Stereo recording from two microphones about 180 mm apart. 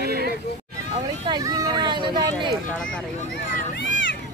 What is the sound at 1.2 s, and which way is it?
Speech, 20° right (ahead or behind).